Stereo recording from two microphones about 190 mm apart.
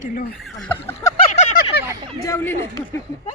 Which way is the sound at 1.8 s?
15° right (ahead or behind).